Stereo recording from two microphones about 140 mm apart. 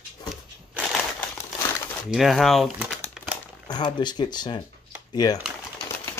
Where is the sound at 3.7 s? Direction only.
30° left (ahead or behind).